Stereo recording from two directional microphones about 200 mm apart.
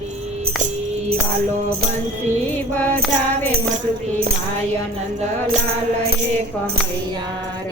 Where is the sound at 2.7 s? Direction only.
10° left (ahead or behind).